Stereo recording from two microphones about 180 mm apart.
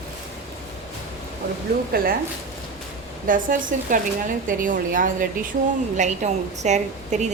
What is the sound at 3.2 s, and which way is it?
A woman's voice, 50° right (ahead or behind).